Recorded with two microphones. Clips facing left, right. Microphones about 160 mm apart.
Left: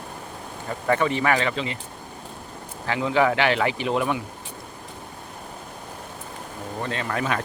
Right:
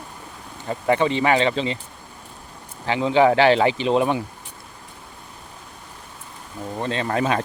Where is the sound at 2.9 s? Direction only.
25° right (ahead or behind).